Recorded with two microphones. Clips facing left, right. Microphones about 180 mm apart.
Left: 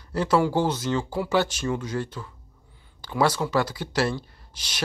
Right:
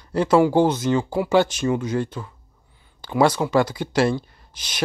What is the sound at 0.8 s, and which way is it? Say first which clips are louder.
Speech: right 5 dB; 15° right (ahead or behind).